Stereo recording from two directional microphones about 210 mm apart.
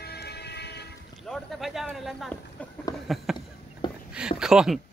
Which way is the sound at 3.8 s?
20° left (ahead or behind).